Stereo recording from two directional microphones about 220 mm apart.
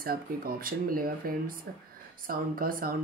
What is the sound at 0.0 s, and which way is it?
Speech, 40° right (ahead or behind).